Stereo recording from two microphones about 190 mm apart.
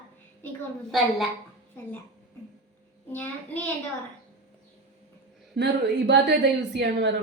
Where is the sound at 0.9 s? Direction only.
Centre (ahead or behind).